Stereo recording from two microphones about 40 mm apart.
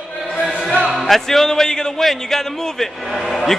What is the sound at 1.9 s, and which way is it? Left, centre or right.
Speech, centre.